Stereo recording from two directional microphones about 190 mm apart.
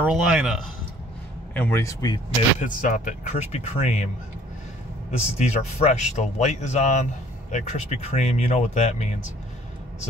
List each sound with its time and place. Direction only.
0.0 s a man's voice: 5° right (ahead or behind)
1.5 s speech: 10° left (ahead or behind)
2.6 s speech: 40° left (ahead or behind)
5.4 s speech: 35° left (ahead or behind)